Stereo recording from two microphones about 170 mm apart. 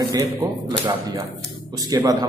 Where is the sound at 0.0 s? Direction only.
20° right (ahead or behind).